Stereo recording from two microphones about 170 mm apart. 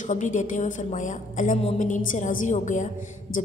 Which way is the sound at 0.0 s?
50° left (ahead or behind).